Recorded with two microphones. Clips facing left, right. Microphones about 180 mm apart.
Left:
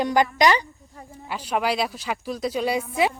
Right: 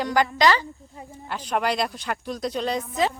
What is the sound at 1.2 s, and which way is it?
A woman's voice, 5° left (ahead or behind).